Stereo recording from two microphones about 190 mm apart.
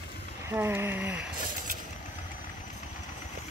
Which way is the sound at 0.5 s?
10° right (ahead or behind).